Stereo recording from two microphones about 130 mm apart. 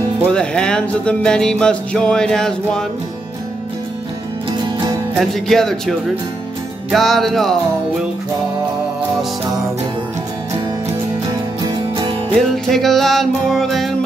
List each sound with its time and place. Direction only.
0.3 s speech: 5° left (ahead or behind)
5.2 s speech: centre (ahead or behind)
11.6 s music: 35° right (ahead or behind)
12.4 s speech: centre (ahead or behind)